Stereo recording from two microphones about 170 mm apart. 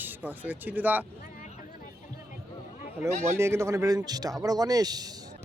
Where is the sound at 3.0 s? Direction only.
15° right (ahead or behind).